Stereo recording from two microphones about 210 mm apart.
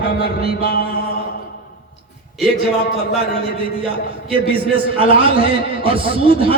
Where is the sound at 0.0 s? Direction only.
50° left (ahead or behind).